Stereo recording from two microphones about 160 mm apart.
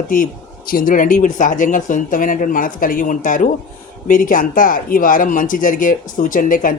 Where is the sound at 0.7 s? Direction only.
60° left (ahead or behind).